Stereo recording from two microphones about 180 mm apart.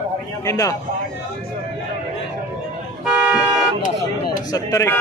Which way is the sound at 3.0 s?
5° right (ahead or behind).